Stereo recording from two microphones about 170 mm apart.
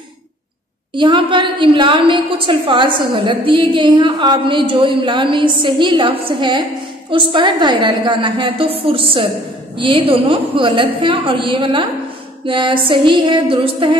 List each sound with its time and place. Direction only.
0.9 s a woman's voice: 30° right (ahead or behind)